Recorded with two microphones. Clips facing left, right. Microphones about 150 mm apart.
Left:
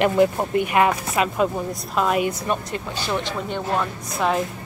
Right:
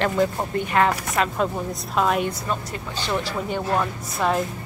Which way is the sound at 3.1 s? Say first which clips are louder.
Even; 5° right (ahead or behind).